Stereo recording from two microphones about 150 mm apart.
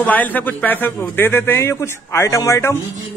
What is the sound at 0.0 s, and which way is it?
A man's voice, 10° left (ahead or behind).